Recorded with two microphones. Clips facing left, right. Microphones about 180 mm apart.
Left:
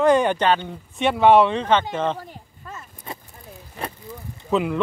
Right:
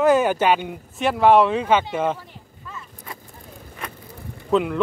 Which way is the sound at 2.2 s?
45° left (ahead or behind).